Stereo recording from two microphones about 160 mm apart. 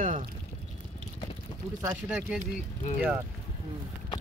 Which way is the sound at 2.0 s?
5° right (ahead or behind).